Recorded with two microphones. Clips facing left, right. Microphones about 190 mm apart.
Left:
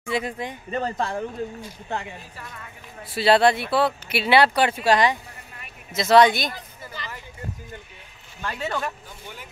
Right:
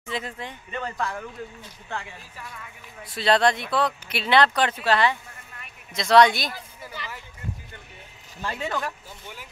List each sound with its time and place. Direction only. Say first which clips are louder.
0.0 s speech: left 5 dB; 10° left (ahead or behind)
0.7 s speech: left 4 dB; 35° left (ahead or behind)
1.6 s speech: left 4 dB; 20° left (ahead or behind)
3.0 s speech: left 3 dB; 5° left (ahead or behind)
5.9 s speech: left 1 dB; 5° left (ahead or behind)
8.6 s speech: left 2 dB; centre (ahead or behind)